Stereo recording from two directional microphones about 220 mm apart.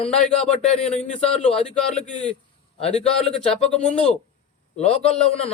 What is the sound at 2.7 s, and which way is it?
Speech, 30° left (ahead or behind).